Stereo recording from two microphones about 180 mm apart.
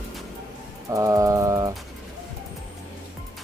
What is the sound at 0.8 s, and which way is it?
Speech, 15° right (ahead or behind).